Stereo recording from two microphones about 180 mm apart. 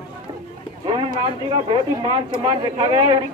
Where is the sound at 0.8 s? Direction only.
25° right (ahead or behind).